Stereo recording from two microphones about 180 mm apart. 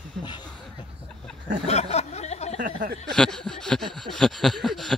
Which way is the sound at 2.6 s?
50° right (ahead or behind).